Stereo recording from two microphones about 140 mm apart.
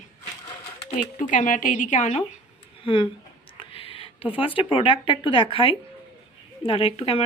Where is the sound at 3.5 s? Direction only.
40° left (ahead or behind).